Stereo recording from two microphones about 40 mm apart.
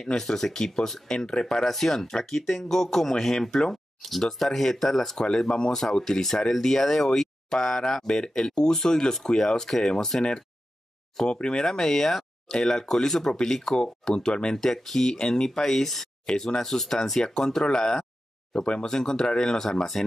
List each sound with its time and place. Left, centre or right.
0.2 s speech: centre
1.0 s speech: centre
11.3 s speech: left
11.6 s speech: centre
15.1 s speech: left
15.4 s speech: centre